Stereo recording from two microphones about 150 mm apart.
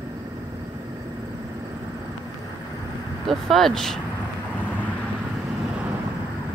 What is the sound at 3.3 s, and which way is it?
Speech, centre (ahead or behind).